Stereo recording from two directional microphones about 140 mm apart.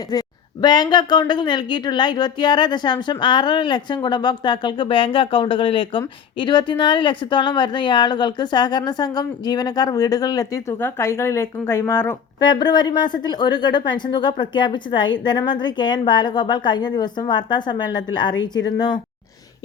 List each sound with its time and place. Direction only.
0.1 s speech: 30° left (ahead or behind)
12.4 s speech: 30° left (ahead or behind)